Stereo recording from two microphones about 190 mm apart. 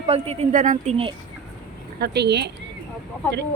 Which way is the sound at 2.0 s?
60° right (ahead or behind).